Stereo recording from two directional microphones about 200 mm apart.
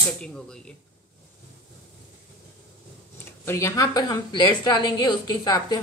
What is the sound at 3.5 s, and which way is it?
A woman's voice, 15° left (ahead or behind).